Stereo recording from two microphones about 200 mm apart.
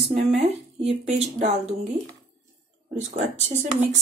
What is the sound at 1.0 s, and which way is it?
Speech, 35° right (ahead or behind).